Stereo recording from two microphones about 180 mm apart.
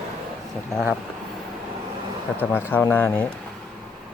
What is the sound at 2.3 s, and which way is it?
Speech, 10° left (ahead or behind).